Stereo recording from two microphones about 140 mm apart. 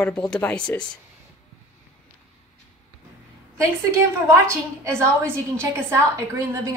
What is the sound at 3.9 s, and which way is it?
A woman's voice, 20° right (ahead or behind).